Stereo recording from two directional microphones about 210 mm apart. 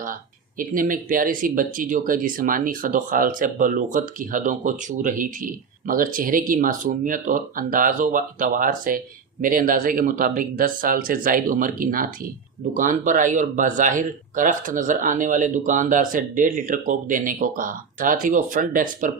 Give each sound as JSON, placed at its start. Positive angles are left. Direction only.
{"t": 0.6, "sound": "speech", "side_deg": -40}